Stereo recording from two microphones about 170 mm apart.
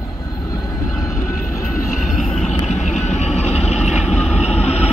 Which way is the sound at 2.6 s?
45° left (ahead or behind).